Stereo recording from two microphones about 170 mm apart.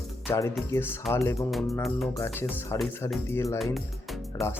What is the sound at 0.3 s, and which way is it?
Speech, 15° left (ahead or behind).